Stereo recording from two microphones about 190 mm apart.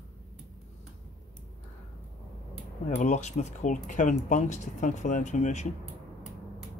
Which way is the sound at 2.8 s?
40° left (ahead or behind).